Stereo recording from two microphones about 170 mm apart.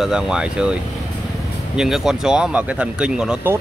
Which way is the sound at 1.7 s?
Centre (ahead or behind).